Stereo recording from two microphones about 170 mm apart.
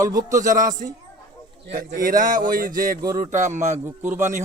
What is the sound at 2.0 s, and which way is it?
Speech, 55° right (ahead or behind).